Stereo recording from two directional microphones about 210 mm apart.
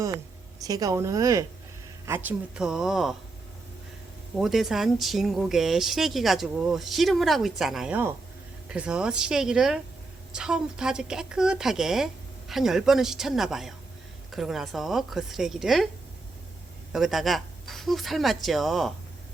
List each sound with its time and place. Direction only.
0.6 s speech: 15° right (ahead or behind); by 3.2 s centre (ahead or behind)
4.4 s speech: centre (ahead or behind)
16.9 s speech: centre (ahead or behind)